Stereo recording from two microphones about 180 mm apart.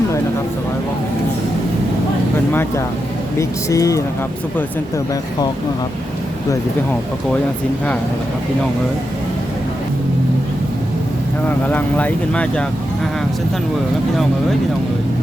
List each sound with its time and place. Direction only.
2.5 s speech: 10° left (ahead or behind)
11.4 s speech: 10° left (ahead or behind)